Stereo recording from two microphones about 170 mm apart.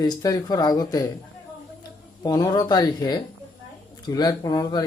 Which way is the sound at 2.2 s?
25° left (ahead or behind).